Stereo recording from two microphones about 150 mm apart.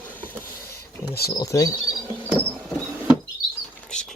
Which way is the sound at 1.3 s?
25° left (ahead or behind).